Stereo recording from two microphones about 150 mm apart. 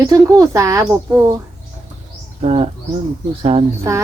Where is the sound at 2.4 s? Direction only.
45° right (ahead or behind).